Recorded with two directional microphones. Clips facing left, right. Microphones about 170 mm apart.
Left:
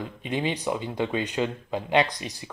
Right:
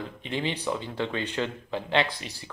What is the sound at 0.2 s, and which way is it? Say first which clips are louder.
Speech: left 3 dB; 15° left (ahead or behind).